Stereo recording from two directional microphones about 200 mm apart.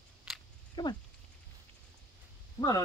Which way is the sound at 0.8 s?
20° left (ahead or behind).